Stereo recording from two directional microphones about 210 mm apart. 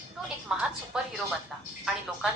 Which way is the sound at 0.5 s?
5° right (ahead or behind).